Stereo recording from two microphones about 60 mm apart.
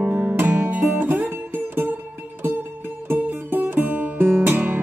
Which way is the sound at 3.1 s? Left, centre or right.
Right.